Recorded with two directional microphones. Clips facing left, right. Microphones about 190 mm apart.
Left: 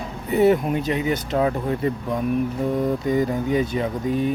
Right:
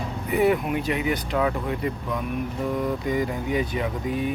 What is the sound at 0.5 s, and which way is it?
Speech, 40° left (ahead or behind).